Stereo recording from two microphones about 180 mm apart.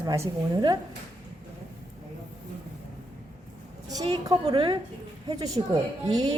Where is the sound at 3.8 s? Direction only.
20° right (ahead or behind).